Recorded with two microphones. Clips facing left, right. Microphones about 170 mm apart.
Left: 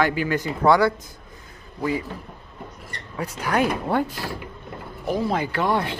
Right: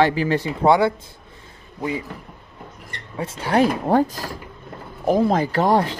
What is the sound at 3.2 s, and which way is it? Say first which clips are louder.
Speech: right 4 dB; 30° right (ahead or behind).